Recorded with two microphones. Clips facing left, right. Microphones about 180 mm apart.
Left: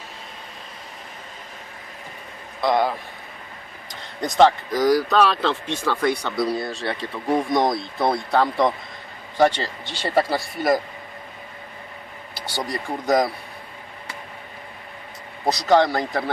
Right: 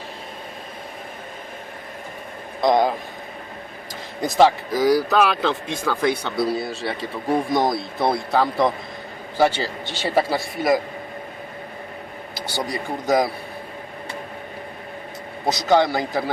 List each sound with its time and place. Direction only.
2.6 s a man's voice: 15° right (ahead or behind)
4.2 s speech: 5° right (ahead or behind)
12.5 s speech: centre (ahead or behind)
15.4 s speech: centre (ahead or behind)